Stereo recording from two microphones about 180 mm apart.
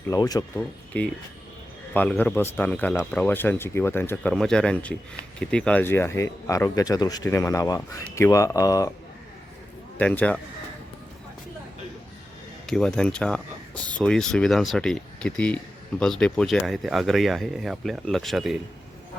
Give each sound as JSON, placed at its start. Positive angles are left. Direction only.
{"t": 0.1, "sound": "speech", "side_deg": 20}
{"t": 0.9, "sound": "speech", "side_deg": 10}
{"t": 10.0, "sound": "speech", "side_deg": 5}
{"t": 12.6, "sound": "speech", "side_deg": 5}